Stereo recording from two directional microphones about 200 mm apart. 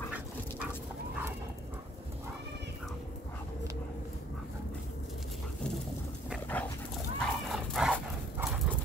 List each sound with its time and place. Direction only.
6.3 s dog: 5° left (ahead or behind)